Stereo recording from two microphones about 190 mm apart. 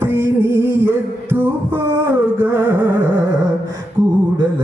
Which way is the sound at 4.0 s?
20° right (ahead or behind).